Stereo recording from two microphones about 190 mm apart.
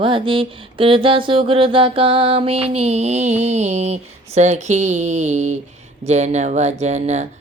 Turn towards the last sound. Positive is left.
turn(degrees=-35)  # may be behind; listen again after turning